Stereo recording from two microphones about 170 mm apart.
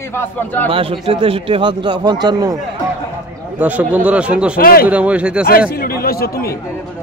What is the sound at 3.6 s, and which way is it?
Speech, 10° right (ahead or behind).